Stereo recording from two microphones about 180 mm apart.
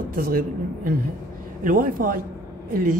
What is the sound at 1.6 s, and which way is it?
Speech, 50° right (ahead or behind).